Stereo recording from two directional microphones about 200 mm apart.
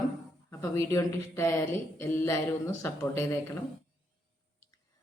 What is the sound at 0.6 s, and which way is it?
A woman's voice, 15° left (ahead or behind).